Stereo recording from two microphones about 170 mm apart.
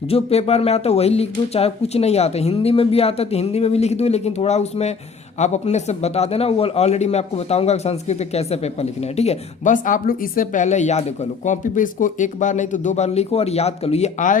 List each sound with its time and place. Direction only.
0.1 s a man's voice: 35° left (ahead or behind)